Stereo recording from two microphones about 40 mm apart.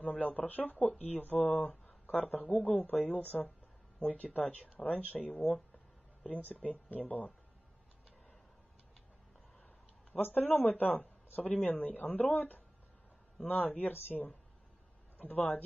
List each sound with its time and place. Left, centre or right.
0.0 s speech: left
2.4 s a man's voice: left
2.7 s speech: left
10.1 s speech: left
15.1 s speech: left